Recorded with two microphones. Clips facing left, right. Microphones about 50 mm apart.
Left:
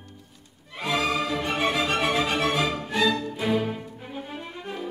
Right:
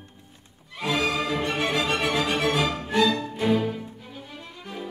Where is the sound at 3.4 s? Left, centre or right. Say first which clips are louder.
Right 2 dB; centre.